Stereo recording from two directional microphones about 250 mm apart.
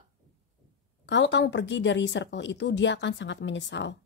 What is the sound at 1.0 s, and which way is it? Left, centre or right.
A woman's voice, left.